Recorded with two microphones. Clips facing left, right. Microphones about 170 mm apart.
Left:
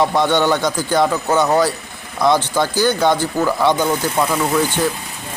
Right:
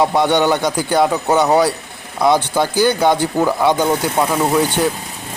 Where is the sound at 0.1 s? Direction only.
10° right (ahead or behind).